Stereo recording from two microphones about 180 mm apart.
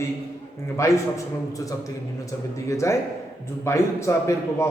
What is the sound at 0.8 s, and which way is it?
Speech, 15° left (ahead or behind).